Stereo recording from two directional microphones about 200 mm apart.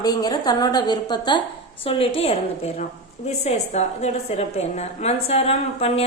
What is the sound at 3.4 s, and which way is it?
A woman's voice, 35° left (ahead or behind).